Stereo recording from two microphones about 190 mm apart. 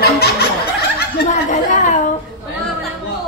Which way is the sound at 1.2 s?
40° left (ahead or behind).